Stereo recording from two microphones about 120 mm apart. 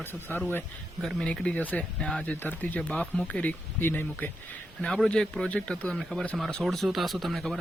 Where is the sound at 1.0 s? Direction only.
5° left (ahead or behind).